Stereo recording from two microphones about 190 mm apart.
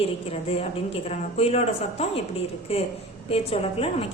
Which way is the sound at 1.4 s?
35° left (ahead or behind).